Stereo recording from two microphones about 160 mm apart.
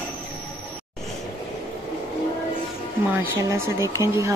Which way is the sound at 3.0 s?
10° right (ahead or behind).